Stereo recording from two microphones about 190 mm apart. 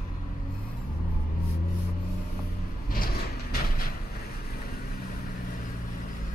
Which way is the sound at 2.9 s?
50° left (ahead or behind).